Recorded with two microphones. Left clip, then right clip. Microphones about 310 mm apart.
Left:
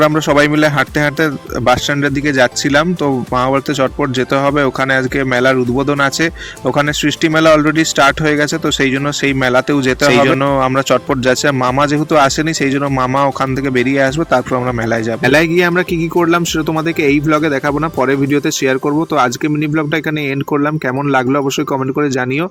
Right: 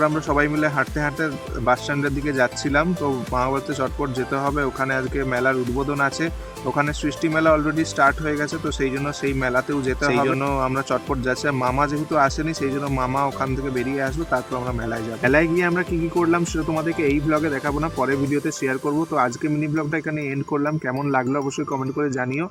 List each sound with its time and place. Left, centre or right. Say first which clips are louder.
0.0 s speech: left 9 dB; left
21.1 s speech: left 9 dB; left